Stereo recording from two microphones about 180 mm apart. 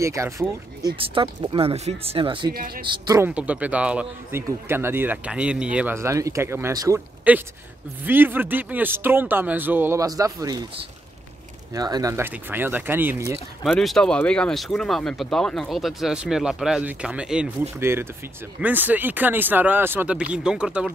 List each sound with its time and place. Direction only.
0.0 s a man's voice: 15° right (ahead or behind)
0.9 s speech: 30° right (ahead or behind)
2.5 s speech: 55° right (ahead or behind)
2.8 s speech: 25° right (ahead or behind)
3.3 s a man's voice: 5° right (ahead or behind)
11.7 s a man's voice: 20° right (ahead or behind)
13.7 s a man's voice: centre (ahead or behind)